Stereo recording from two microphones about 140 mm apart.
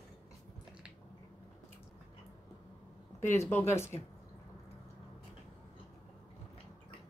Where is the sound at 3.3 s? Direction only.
15° left (ahead or behind).